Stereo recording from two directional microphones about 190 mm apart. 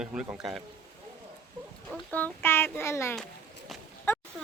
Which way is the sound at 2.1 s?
10° left (ahead or behind).